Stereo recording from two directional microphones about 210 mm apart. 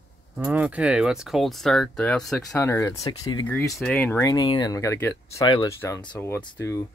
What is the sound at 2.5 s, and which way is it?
Speech, 15° left (ahead or behind).